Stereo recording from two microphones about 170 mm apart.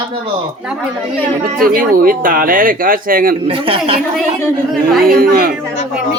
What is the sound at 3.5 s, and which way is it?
Speech, 30° right (ahead or behind).